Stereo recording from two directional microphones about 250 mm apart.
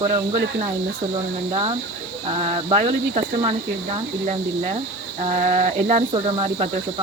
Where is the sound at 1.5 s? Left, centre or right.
Right.